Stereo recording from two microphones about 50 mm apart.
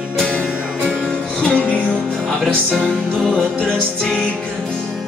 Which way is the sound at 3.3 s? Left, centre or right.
Centre.